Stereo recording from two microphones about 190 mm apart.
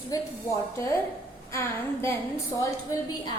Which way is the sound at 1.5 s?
15° left (ahead or behind).